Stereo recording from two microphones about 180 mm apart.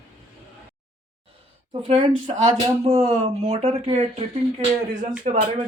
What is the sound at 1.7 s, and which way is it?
Speech, 30° right (ahead or behind).